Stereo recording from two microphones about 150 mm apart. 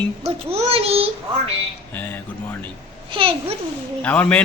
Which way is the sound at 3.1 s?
40° right (ahead or behind).